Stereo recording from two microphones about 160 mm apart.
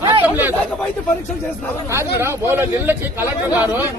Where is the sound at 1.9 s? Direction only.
15° right (ahead or behind).